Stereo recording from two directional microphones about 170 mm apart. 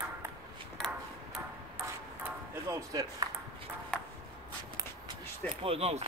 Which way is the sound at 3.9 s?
5° left (ahead or behind).